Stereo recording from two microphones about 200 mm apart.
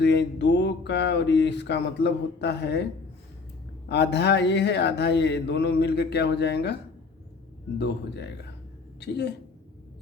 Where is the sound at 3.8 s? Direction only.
60° left (ahead or behind).